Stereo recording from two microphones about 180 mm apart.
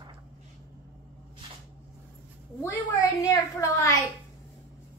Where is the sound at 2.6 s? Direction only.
15° left (ahead or behind).